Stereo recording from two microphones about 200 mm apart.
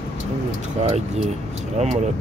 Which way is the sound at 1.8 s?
35° right (ahead or behind).